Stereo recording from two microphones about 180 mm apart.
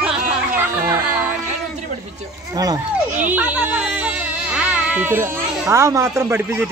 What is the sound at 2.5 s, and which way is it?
Speech, 20° right (ahead or behind).